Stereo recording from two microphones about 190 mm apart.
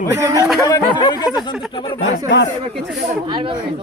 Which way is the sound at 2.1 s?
70° left (ahead or behind).